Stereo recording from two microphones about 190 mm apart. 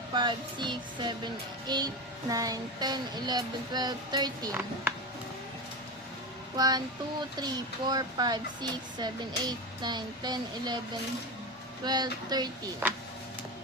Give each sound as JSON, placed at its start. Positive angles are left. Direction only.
{"t": 0.1, "sound": "speech", "side_deg": -25}
{"t": 6.6, "sound": "speech", "side_deg": -20}
{"t": 11.9, "sound": "speech", "side_deg": -20}